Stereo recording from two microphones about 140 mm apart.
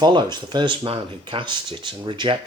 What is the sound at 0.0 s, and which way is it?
Speech, 30° right (ahead or behind).